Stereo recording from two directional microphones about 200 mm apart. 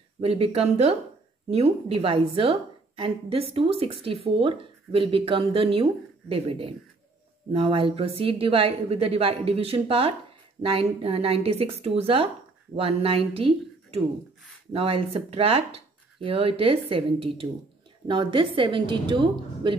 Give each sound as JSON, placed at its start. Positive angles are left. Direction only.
{"t": 0.2, "sound": "a woman's voice", "side_deg": -30}